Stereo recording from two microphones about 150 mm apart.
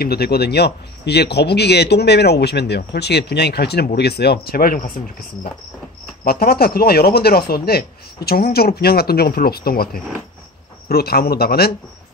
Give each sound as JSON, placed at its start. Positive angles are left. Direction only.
{"t": 0.0, "sound": "speech", "side_deg": 90}
{"t": 6.2, "sound": "speech", "side_deg": 90}